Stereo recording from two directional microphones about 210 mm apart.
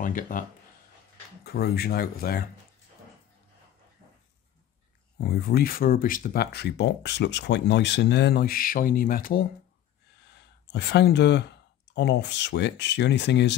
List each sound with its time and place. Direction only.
0.0 s speech: 40° left (ahead or behind)
5.2 s speech: 50° left (ahead or behind)